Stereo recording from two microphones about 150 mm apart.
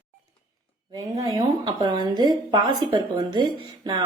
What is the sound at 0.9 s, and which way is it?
A woman's voice, 25° right (ahead or behind).